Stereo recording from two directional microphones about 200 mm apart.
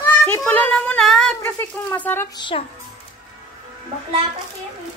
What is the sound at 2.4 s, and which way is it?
Speech, 25° left (ahead or behind).